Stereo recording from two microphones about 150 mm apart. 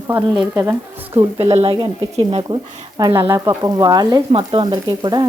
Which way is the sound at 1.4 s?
45° right (ahead or behind).